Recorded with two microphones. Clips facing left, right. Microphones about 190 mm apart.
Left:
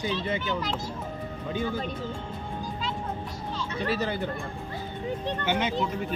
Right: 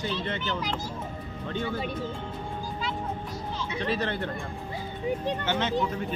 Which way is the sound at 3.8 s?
5° left (ahead or behind).